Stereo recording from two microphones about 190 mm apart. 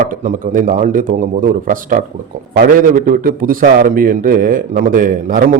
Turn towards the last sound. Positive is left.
turn(degrees=-45)  # may be behind; listen again after turning